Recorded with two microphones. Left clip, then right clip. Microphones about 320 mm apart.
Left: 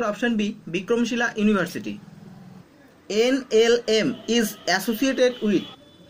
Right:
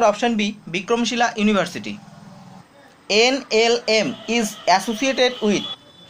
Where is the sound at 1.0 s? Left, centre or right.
Right.